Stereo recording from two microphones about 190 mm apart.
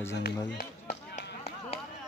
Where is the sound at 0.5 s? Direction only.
40° left (ahead or behind).